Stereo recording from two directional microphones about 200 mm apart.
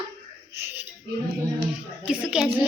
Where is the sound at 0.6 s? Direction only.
10° right (ahead or behind).